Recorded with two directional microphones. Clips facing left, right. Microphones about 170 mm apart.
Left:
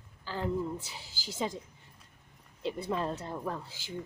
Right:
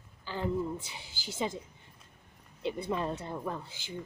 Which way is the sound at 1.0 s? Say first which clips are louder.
Even; 55° right (ahead or behind).